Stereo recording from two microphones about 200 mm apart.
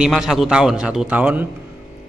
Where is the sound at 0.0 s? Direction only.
Centre (ahead or behind).